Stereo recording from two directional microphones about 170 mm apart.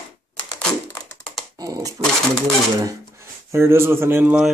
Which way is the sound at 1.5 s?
20° right (ahead or behind).